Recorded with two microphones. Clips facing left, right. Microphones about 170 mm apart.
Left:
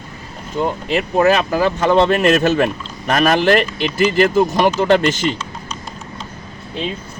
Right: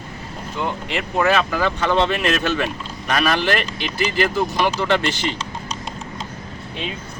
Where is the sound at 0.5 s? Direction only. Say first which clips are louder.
Left 6 dB; 40° left (ahead or behind).